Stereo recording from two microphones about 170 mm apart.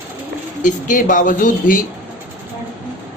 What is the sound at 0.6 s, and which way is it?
Speech, 50° left (ahead or behind).